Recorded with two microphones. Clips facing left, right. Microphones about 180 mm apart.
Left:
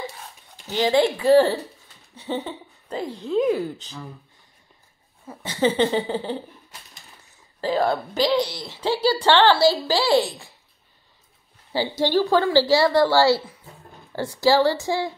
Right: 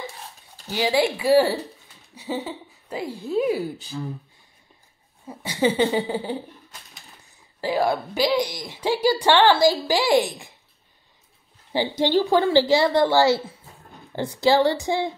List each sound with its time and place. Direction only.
0.7 s a woman's voice: 10° right (ahead or behind)
5.3 s a woman's voice: 10° right (ahead or behind)
7.6 s a woman's voice: 10° right (ahead or behind)
11.7 s a woman's voice: 20° right (ahead or behind)